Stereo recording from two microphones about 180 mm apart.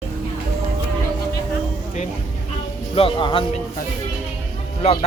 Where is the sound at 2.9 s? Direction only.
30° left (ahead or behind).